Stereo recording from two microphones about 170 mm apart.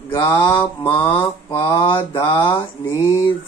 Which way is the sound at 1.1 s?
30° left (ahead or behind).